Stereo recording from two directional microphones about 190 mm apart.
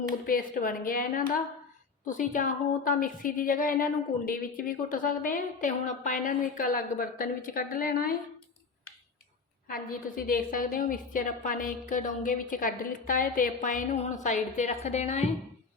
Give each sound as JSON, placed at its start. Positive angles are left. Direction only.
{"t": 0.3, "sound": "a woman's voice", "side_deg": 50}
{"t": 9.6, "sound": "a woman's voice", "side_deg": 50}